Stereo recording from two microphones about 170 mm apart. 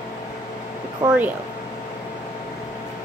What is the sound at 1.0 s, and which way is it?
Speech, 15° right (ahead or behind).